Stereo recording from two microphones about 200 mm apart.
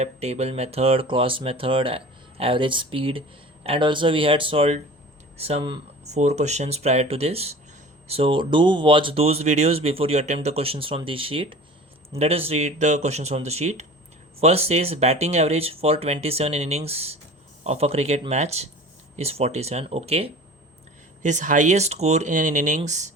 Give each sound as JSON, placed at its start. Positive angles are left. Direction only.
{"t": 0.0, "sound": "speech", "side_deg": -30}